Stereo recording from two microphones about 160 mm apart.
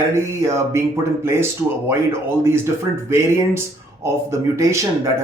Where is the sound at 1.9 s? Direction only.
15° right (ahead or behind).